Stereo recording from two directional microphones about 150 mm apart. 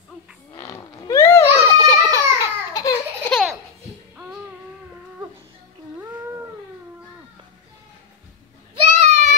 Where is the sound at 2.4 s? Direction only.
25° left (ahead or behind).